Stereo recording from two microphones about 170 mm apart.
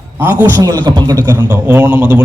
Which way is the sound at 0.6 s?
20° right (ahead or behind).